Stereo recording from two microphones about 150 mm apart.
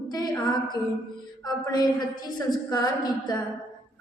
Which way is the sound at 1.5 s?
25° left (ahead or behind).